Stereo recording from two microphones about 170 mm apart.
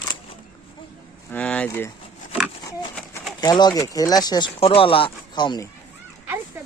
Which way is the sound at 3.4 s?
25° left (ahead or behind).